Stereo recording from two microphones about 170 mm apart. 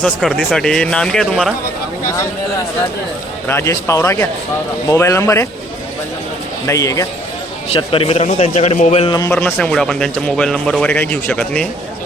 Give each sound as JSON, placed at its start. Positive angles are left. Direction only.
{"t": 0.0, "sound": "speech", "side_deg": 5}
{"t": 3.4, "sound": "a man's voice", "side_deg": 15}
{"t": 6.7, "sound": "speech", "side_deg": 20}
{"t": 7.7, "sound": "a man's voice", "side_deg": 35}
{"t": 9.0, "sound": "a man's voice", "side_deg": 20}